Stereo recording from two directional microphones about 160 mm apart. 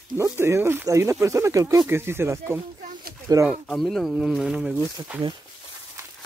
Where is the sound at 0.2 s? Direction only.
15° right (ahead or behind).